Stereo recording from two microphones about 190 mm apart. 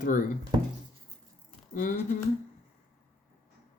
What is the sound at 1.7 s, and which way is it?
Speech, 45° left (ahead or behind).